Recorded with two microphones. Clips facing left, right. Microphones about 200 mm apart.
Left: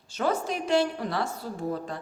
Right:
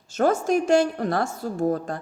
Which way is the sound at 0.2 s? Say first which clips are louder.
Right 7 dB; 45° right (ahead or behind).